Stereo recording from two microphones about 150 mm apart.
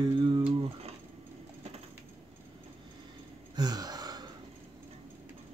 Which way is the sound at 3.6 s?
25° right (ahead or behind).